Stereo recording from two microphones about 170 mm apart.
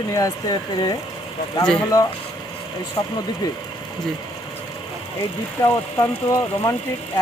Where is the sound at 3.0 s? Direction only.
25° left (ahead or behind).